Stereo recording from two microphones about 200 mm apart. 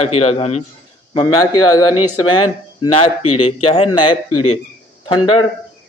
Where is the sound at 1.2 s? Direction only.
20° left (ahead or behind).